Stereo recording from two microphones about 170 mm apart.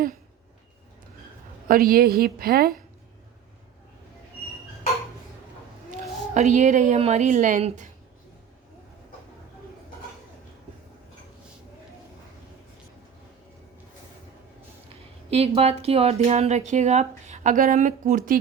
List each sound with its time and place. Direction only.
1.6 s a woman's voice: 60° right (ahead or behind)
6.3 s speech: 45° right (ahead or behind)
15.3 s speech: 35° right (ahead or behind)